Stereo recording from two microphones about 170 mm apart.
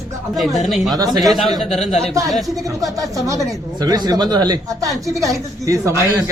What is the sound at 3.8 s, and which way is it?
Speech, 20° right (ahead or behind).